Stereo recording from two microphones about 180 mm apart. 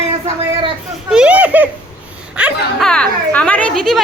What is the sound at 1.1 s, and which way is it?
Speech, 5° right (ahead or behind).